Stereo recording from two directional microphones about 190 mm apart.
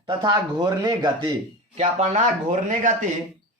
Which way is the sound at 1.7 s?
40° right (ahead or behind).